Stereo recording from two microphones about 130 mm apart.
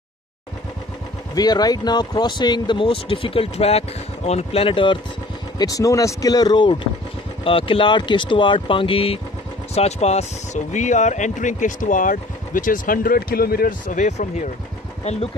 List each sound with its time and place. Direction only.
1.3 s speech: 30° left (ahead or behind)
5.6 s speech: 25° left (ahead or behind); by 9.2 s 45° left (ahead or behind)
9.8 s speech: 55° left (ahead or behind); by 13.1 s 90° left
13.7 s speech: 75° left (ahead or behind)